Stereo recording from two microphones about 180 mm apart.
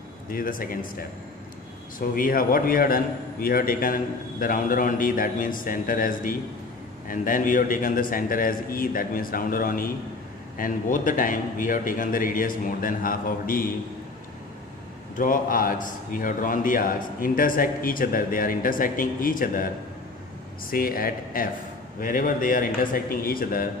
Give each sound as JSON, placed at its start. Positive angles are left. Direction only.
{"t": 0.3, "sound": "a man's voice", "side_deg": 50}
{"t": 2.0, "sound": "a man's voice", "side_deg": 50}
{"t": 15.1, "sound": "a man's voice", "side_deg": 50}
{"t": 20.7, "sound": "a man's voice", "side_deg": 55}